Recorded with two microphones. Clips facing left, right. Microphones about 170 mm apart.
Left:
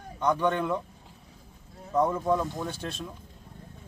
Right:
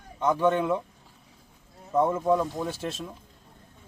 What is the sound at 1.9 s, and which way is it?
Speech, 5° right (ahead or behind).